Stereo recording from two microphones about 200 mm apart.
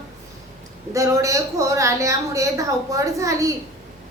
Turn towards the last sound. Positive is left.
turn(degrees=-15)  # may be behind; listen again after turning